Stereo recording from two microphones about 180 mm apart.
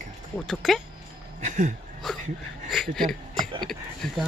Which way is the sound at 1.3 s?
45° right (ahead or behind).